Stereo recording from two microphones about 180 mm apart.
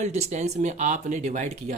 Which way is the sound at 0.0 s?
40° right (ahead or behind).